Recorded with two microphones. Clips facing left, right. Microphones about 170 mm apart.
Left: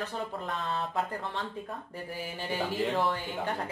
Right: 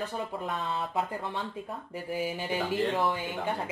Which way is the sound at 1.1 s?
15° right (ahead or behind).